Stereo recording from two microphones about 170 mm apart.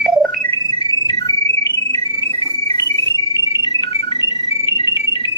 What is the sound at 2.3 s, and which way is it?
Alarm, 20° left (ahead or behind).